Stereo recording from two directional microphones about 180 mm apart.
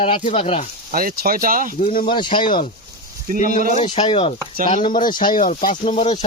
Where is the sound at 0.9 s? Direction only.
55° right (ahead or behind).